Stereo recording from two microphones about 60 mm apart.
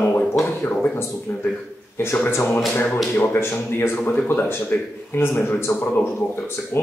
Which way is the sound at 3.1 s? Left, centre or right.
Left.